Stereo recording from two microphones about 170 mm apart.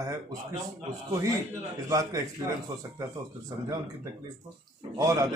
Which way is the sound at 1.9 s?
20° right (ahead or behind).